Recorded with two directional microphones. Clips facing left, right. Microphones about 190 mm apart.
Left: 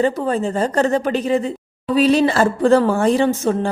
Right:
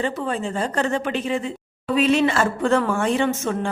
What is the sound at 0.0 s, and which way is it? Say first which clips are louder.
A woman's voice: left 6 dB; 40° left (ahead or behind).